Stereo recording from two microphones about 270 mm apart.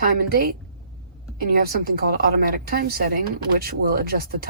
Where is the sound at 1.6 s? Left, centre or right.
Right.